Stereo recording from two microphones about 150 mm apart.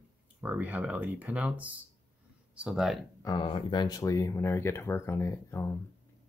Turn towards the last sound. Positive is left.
turn(degrees=20)  # may be behind; listen again after turning